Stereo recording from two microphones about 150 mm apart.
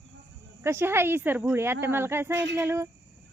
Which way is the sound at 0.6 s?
15° right (ahead or behind).